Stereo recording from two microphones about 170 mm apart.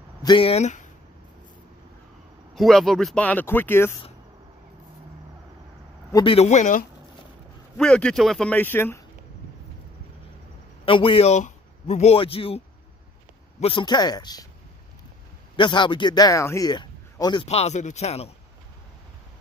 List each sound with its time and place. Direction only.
0.2 s a man's voice: 30° left (ahead or behind)
2.5 s speech: centre (ahead or behind)
6.1 s a man's voice: 35° left (ahead or behind)
7.7 s speech: 5° left (ahead or behind)
10.9 s a man's voice: 30° left (ahead or behind)
15.5 s a man's voice: 30° left (ahead or behind)
17.5 s a man's voice: 40° left (ahead or behind)